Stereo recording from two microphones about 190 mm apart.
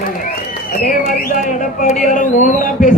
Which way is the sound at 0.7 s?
45° left (ahead or behind).